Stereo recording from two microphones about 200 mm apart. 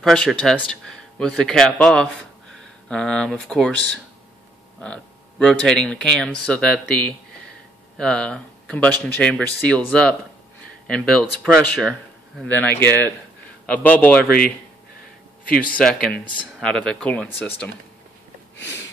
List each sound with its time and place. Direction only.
0.0 s speech: centre (ahead or behind)
15.5 s speech: 45° left (ahead or behind)
15.8 s speech: 5° left (ahead or behind)
18.6 s a sound: 60° left (ahead or behind)